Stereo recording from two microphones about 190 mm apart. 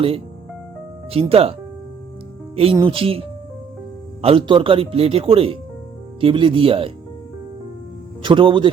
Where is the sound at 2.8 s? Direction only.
30° right (ahead or behind).